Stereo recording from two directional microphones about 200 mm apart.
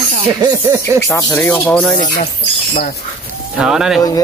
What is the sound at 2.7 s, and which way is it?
Speech, 55° left (ahead or behind).